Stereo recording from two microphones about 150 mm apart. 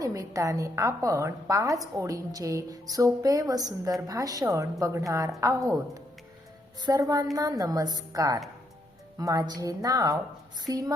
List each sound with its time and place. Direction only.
0.0 s a woman's voice: 20° right (ahead or behind)
6.8 s a woman's voice: 25° right (ahead or behind)